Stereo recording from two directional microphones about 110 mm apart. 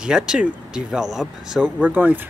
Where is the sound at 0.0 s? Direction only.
5° right (ahead or behind).